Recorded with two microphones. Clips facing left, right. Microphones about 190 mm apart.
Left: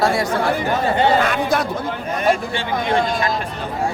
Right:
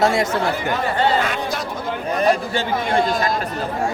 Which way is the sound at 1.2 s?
55° left (ahead or behind).